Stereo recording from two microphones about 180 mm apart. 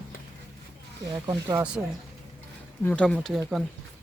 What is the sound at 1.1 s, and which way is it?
Speech, 20° right (ahead or behind).